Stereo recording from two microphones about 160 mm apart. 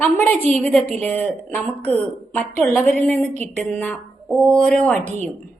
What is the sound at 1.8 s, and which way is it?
Speech, 40° right (ahead or behind).